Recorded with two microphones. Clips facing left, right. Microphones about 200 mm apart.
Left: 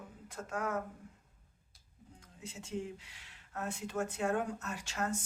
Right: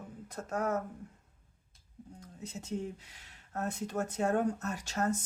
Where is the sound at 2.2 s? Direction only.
40° right (ahead or behind).